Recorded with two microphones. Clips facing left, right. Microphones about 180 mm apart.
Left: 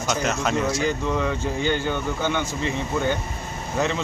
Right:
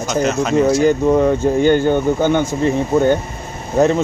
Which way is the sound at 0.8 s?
45° right (ahead or behind).